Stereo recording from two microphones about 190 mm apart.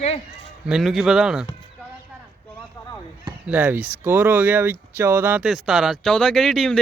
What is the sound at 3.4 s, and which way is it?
Speech, 10° right (ahead or behind).